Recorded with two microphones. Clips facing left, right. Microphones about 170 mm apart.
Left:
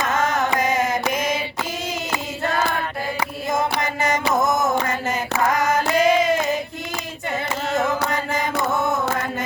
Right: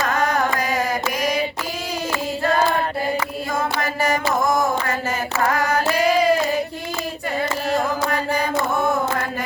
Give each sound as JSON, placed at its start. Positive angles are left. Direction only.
{"t": 0.0, "sound": "carnatic music", "side_deg": 20}
{"t": 3.2, "sound": "mantra", "side_deg": 20}
{"t": 5.5, "sound": "child singing", "side_deg": 20}
{"t": 7.7, "sound": "mantra", "side_deg": 20}